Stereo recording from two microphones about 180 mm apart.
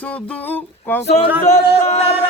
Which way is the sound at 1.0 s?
35° left (ahead or behind).